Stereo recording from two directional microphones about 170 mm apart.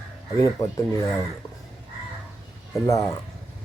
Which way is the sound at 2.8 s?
20° left (ahead or behind).